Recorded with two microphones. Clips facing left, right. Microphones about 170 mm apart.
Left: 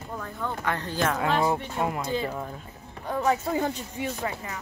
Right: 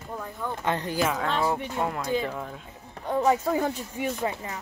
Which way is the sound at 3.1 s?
20° right (ahead or behind).